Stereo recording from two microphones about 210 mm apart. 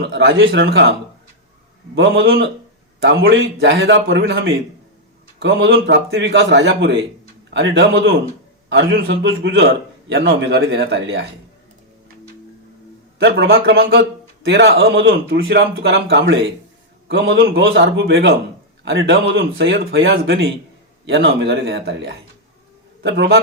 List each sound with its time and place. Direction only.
0.0 s a man's voice: 55° right (ahead or behind)
2.0 s a man's voice: 55° right (ahead or behind)
3.0 s a man's voice: 60° right (ahead or behind)
13.2 s speech: 50° right (ahead or behind)
14.4 s a man's voice: 60° right (ahead or behind)
15.0 s a man's voice: 50° right (ahead or behind)